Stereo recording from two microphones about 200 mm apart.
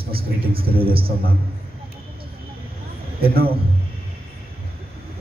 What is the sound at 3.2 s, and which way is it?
Speech, 50° right (ahead or behind).